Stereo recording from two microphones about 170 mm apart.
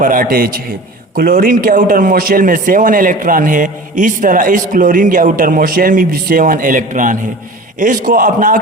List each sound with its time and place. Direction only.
0.0 s a man's voice: 55° right (ahead or behind)